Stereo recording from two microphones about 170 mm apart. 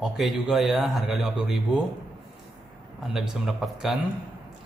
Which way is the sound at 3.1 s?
Centre (ahead or behind).